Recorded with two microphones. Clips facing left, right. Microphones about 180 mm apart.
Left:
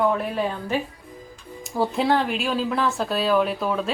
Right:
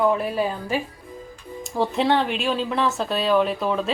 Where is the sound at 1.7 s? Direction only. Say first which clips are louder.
Right 1 dB; centre (ahead or behind).